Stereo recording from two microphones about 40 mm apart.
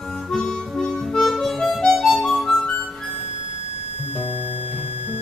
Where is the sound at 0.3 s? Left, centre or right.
Centre.